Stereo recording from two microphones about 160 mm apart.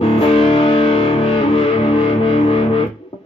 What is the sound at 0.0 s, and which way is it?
Music, 35° left (ahead or behind).